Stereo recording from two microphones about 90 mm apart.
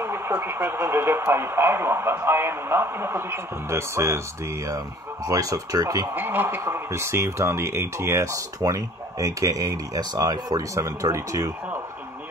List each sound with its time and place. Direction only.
0.0 s speech: 25° right (ahead or behind)
6.1 s speech: 25° right (ahead or behind)